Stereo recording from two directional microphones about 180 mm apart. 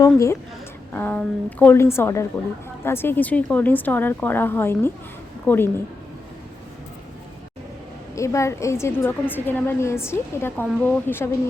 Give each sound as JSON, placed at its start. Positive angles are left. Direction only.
{"t": 0.0, "sound": "a woman's voice", "side_deg": 15}
{"t": 8.1, "sound": "a woman's voice", "side_deg": 15}